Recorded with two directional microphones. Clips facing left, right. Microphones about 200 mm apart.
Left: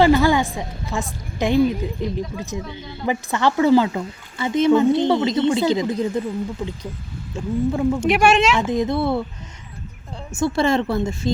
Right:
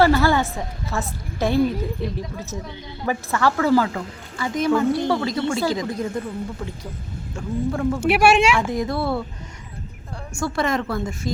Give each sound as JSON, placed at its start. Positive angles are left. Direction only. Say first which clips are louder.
{"t": 0.0, "sound": "a woman's voice", "louder": "left 2 dB", "side_deg": 15}
{"t": 8.0, "sound": "speech", "louder": "right 1 dB", "side_deg": -10}
{"t": 8.5, "sound": "a woman's voice", "louder": "left 3 dB", "side_deg": 20}
{"t": 10.4, "sound": "a woman's voice", "louder": "left 4 dB", "side_deg": 25}